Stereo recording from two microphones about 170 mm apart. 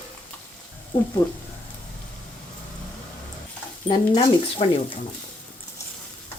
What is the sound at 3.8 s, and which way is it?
Speech, 25° left (ahead or behind).